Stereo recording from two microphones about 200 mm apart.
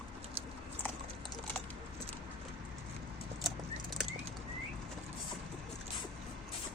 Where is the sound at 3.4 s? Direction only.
Centre (ahead or behind).